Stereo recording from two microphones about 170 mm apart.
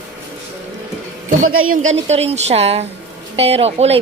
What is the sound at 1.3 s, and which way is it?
A woman's voice, 50° right (ahead or behind).